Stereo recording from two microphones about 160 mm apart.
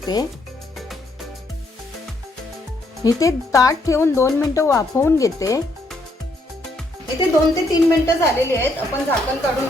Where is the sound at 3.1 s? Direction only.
20° left (ahead or behind).